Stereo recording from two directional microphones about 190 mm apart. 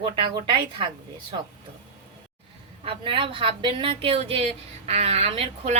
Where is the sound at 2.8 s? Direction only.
30° right (ahead or behind).